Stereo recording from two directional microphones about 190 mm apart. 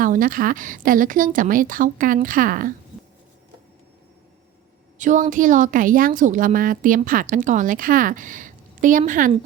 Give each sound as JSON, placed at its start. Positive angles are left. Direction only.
{"t": 0.0, "sound": "a woman's voice", "side_deg": -45}
{"t": 4.9, "sound": "a woman's voice", "side_deg": -40}